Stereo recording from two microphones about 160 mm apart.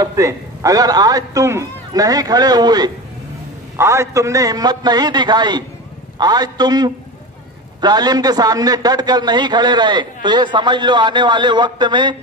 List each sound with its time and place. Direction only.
0.0 s a man's voice: 20° right (ahead or behind)